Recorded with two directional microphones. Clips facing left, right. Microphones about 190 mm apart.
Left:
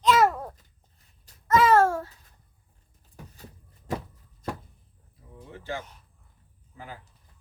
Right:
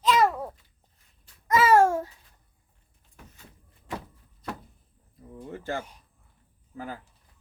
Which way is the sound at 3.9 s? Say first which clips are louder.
Left 4 dB; 40° left (ahead or behind).